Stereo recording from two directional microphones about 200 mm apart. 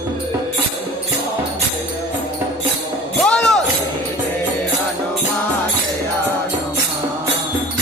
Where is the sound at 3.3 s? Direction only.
Centre (ahead or behind).